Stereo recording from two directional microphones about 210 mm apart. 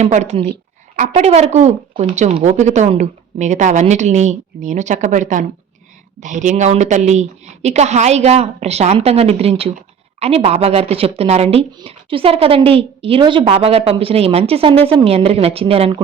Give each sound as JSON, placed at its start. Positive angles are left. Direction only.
{"t": 0.0, "sound": "speech", "side_deg": -35}